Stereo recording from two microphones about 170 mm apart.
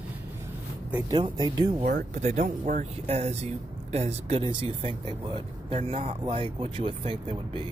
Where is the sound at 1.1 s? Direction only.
25° right (ahead or behind).